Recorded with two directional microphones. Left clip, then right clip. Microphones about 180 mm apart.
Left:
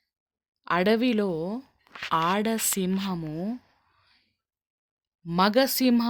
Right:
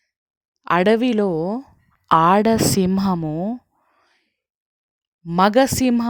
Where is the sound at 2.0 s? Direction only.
50° right (ahead or behind).